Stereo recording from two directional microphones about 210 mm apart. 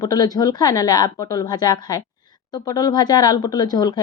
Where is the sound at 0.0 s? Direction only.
20° left (ahead or behind).